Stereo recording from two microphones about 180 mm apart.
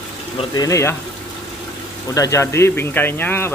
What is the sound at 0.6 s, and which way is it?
Speech, 15° left (ahead or behind).